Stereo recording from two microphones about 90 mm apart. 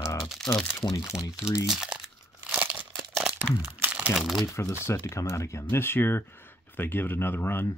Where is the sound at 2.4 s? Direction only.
15° right (ahead or behind).